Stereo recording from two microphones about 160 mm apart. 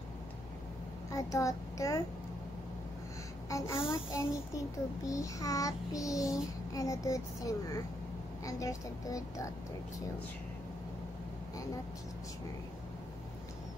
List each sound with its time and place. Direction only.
1.1 s a child's voice: 20° left (ahead or behind)
3.4 s a child's voice: 20° left (ahead or behind)